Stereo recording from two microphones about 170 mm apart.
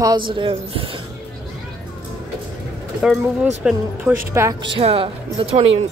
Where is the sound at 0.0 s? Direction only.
25° right (ahead or behind).